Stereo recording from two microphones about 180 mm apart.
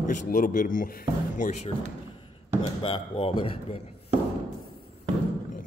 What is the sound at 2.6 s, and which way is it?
Speech, 30° left (ahead or behind).